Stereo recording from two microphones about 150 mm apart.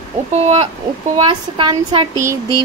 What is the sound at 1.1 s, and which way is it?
Speech, 30° right (ahead or behind).